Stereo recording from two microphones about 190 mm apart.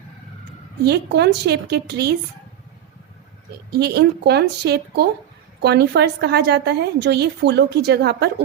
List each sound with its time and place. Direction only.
0.9 s a woman's voice: 60° right (ahead or behind)
3.7 s a woman's voice: 60° right (ahead or behind)